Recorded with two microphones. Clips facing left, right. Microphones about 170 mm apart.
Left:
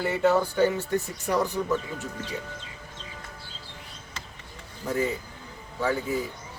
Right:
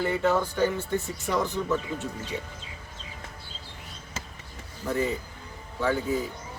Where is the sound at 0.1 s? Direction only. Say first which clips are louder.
Left 2 dB; 10° left (ahead or behind).